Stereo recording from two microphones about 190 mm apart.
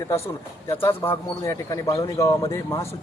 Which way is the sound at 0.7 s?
10° left (ahead or behind).